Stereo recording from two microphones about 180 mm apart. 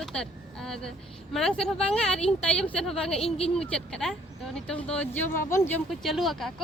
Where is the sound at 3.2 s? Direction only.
35° left (ahead or behind).